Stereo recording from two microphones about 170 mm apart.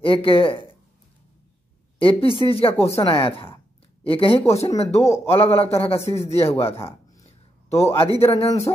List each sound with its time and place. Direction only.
0.0 s speech: 30° left (ahead or behind)
2.0 s a woman's voice: 30° left (ahead or behind)
5.0 s a man's voice: 15° left (ahead or behind)
5.3 s speech: 35° left (ahead or behind)